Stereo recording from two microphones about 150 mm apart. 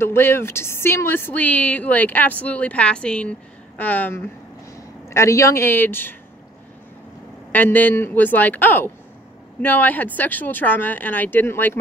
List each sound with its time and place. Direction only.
0.0 s speech: 15° left (ahead or behind)
7.5 s speech: 10° left (ahead or behind)